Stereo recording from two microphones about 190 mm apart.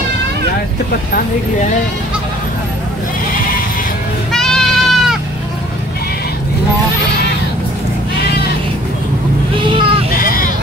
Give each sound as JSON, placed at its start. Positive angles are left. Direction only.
{"t": 4.3, "sound": "goat", "side_deg": 5}
{"t": 9.6, "sound": "vehicle", "side_deg": -25}
{"t": 10.1, "sound": "vehicle", "side_deg": 50}